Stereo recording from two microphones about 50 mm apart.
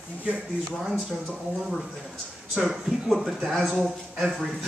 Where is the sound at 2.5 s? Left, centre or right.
Centre.